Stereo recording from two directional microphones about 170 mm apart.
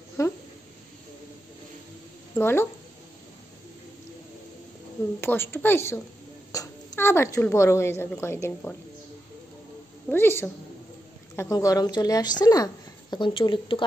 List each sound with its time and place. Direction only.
0.2 s a woman's voice: 20° left (ahead or behind)
2.3 s a woman's voice: 15° left (ahead or behind)
5.2 s a woman's voice: 15° left (ahead or behind)
10.1 s a woman's voice: 15° left (ahead or behind); by 13.8 s 30° left (ahead or behind)